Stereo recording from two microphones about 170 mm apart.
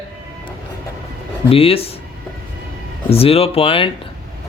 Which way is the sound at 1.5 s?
35° left (ahead or behind).